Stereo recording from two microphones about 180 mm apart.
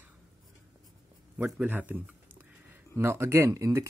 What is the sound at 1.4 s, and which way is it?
Speech, 10° right (ahead or behind).